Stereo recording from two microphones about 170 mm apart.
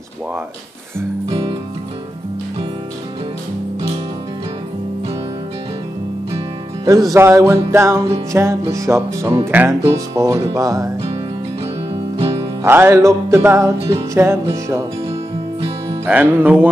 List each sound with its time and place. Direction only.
1.3 s music: 30° right (ahead or behind)
6.8 s music: 20° right (ahead or behind)
10.5 s speech: 20° right (ahead or behind)
12.6 s music: 15° right (ahead or behind)
16.1 s music: 10° right (ahead or behind)